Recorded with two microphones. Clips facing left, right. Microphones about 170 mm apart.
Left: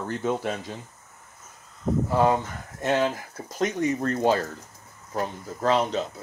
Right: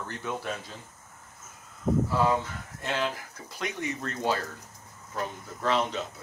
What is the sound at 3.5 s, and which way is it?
Speech, 45° left (ahead or behind).